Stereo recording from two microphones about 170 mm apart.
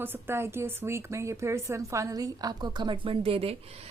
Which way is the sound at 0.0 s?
15° right (ahead or behind).